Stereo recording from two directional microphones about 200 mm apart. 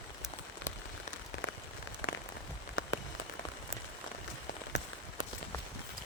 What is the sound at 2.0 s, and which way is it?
Rain on surface, 90° left.